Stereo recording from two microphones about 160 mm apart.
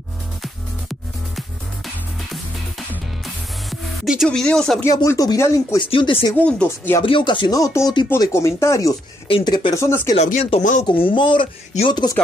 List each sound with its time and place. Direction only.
0.4 s music: centre (ahead or behind)
4.0 s speech: centre (ahead or behind)
4.8 s speech: 20° left (ahead or behind)
5.8 s speech: 30° left (ahead or behind)
6.3 s speech: 10° left (ahead or behind)
7.0 s speech: 30° left (ahead or behind)
9.3 s speech: 30° left (ahead or behind)
9.8 s speech: 15° left (ahead or behind)
10.1 s speech: 45° left (ahead or behind)
10.6 s speech: 55° left (ahead or behind)
10.9 s speech: 30° left (ahead or behind)